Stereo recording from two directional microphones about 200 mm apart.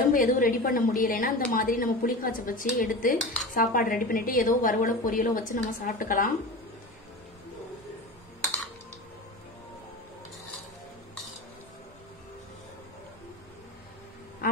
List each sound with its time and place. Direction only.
0.1 s a woman's voice: 40° left (ahead or behind)